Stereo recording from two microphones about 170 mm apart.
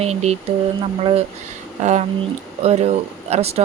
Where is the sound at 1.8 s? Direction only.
40° right (ahead or behind).